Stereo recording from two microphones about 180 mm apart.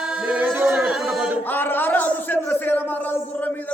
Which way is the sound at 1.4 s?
10° left (ahead or behind).